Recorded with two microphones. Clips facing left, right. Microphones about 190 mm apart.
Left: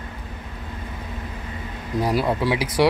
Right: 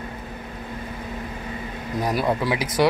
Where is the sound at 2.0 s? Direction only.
5° left (ahead or behind).